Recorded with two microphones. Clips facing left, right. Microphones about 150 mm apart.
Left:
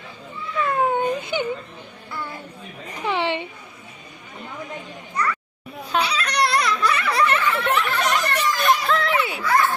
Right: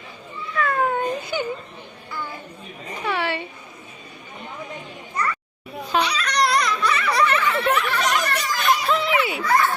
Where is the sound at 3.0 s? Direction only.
20° left (ahead or behind).